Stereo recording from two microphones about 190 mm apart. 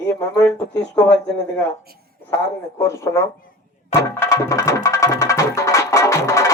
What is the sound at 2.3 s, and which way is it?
Speech, 15° left (ahead or behind).